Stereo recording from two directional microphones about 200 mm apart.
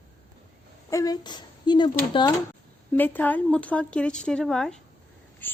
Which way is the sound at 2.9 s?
10° left (ahead or behind).